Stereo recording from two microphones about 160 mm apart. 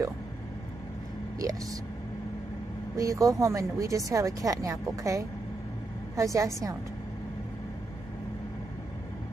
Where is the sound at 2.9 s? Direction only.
20° right (ahead or behind).